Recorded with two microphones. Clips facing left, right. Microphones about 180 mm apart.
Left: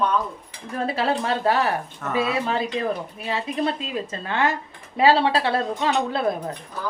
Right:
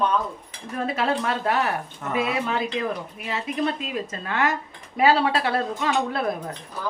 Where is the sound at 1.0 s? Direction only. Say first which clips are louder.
Left 2 dB; 30° left (ahead or behind).